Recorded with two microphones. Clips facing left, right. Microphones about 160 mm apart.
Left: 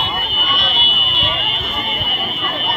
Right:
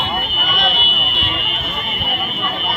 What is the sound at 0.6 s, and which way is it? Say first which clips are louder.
Vehicle: right 3 dB; 55° right (ahead or behind).